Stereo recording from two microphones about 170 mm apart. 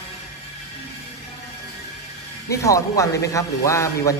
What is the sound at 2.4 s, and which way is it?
A man's voice, 20° left (ahead or behind).